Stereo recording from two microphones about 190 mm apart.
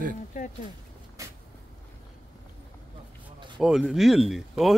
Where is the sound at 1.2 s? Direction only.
15° right (ahead or behind).